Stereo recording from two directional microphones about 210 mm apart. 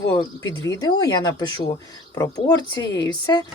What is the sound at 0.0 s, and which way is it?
Speech, 20° left (ahead or behind).